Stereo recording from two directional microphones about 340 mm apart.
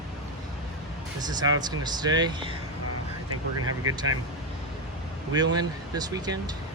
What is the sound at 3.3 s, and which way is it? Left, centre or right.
Speech, right.